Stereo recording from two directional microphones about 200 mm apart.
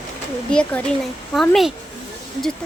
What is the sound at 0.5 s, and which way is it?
Speech, 5° left (ahead or behind).